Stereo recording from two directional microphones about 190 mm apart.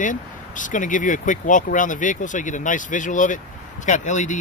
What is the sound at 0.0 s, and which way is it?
Speech, 40° left (ahead or behind).